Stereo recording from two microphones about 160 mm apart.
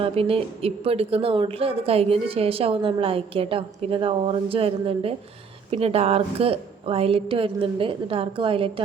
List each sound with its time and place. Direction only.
0.0 s a woman's voice: 35° right (ahead or behind)